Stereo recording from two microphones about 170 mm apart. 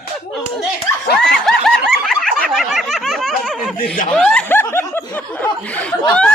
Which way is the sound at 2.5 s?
Centre (ahead or behind).